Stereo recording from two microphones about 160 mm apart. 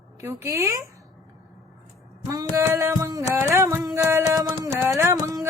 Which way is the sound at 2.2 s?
20° right (ahead or behind).